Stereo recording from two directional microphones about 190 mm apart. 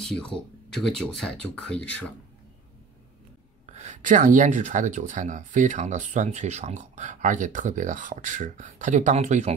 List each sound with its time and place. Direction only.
0.0 s speech: 5° left (ahead or behind)
3.6 s speech: 35° right (ahead or behind)